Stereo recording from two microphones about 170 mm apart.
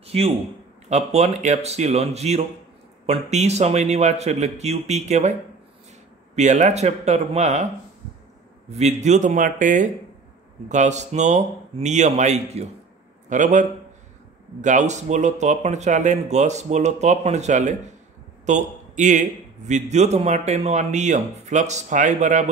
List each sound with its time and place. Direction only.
0.0 s a sound: 35° right (ahead or behind)
0.8 s speech: 40° right (ahead or behind)
6.3 s speech: 45° right (ahead or behind)
8.6 s a man's voice: 40° right (ahead or behind)